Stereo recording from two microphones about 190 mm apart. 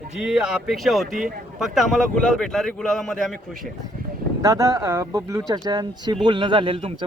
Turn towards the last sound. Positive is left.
turn(degrees=-25)  # may be behind; listen again after turning